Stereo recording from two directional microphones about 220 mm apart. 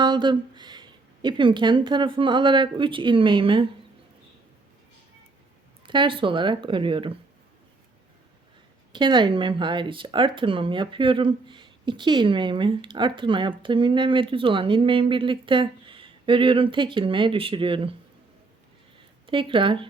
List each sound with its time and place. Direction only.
0.0 s speech: 20° right (ahead or behind)
5.8 s speech: 20° right (ahead or behind)
8.9 s speech: 20° right (ahead or behind)
19.2 s speech: 25° right (ahead or behind)